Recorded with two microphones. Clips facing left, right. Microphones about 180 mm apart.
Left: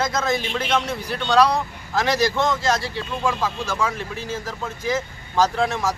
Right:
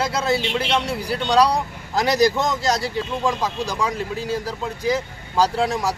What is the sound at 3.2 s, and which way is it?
Speech, 15° right (ahead or behind).